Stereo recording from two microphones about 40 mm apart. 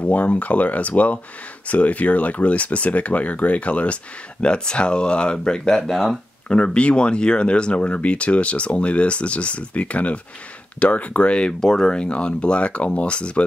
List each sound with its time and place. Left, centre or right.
0.0 s speech: left
5.8 s speech: centre
6.5 s speech: left
11.6 s speech: centre
12.0 s speech: left